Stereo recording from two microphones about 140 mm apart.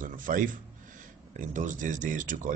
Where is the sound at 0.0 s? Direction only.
75° right (ahead or behind).